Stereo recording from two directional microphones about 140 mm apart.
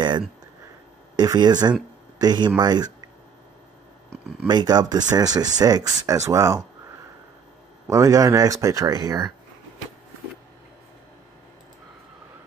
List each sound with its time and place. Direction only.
1.1 s speech: 30° right (ahead or behind)
4.5 s speech: 30° right (ahead or behind)
7.9 s speech: 25° right (ahead or behind)